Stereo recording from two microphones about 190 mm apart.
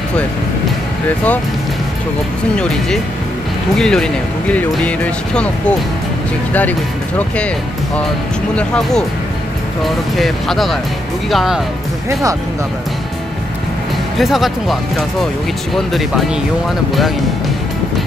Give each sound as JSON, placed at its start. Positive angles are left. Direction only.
{"t": 3.7, "sound": "speech", "side_deg": 5}
{"t": 8.5, "sound": "speech", "side_deg": 5}
{"t": 12.1, "sound": "speech", "side_deg": -15}
{"t": 14.1, "sound": "speech", "side_deg": 0}